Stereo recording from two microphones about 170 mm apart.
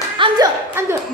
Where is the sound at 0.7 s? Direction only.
15° right (ahead or behind).